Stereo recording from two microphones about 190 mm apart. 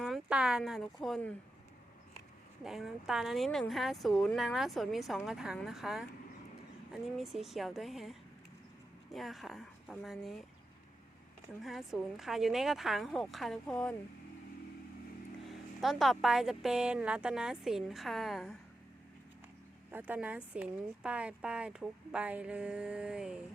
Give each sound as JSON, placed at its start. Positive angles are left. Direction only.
{"t": 0.0, "sound": "a sound", "side_deg": 0}
{"t": 1.0, "sound": "speech", "side_deg": 0}
{"t": 2.6, "sound": "speech", "side_deg": 0}
{"t": 9.1, "sound": "speech", "side_deg": 0}
{"t": 11.6, "sound": "speech", "side_deg": 0}
{"t": 15.8, "sound": "speech", "side_deg": 0}
{"t": 19.9, "sound": "speech", "side_deg": -10}